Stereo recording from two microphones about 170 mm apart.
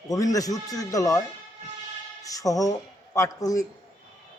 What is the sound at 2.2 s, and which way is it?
Speech, 20° left (ahead or behind).